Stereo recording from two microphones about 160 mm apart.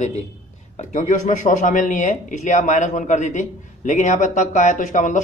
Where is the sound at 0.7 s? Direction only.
50° left (ahead or behind).